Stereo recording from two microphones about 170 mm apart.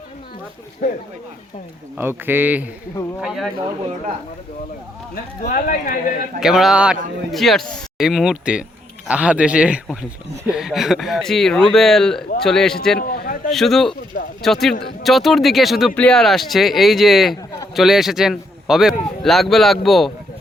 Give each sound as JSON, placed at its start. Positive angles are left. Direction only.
{"t": 2.0, "sound": "speech", "side_deg": -10}
{"t": 5.1, "sound": "speech", "side_deg": 55}
{"t": 6.4, "sound": "speech", "side_deg": 0}
{"t": 13.0, "sound": "a man's voice", "side_deg": 60}
{"t": 13.5, "sound": "speech", "side_deg": 0}